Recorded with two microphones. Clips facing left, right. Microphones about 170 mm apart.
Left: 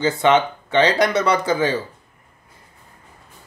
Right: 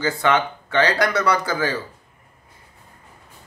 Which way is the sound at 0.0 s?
20° left (ahead or behind).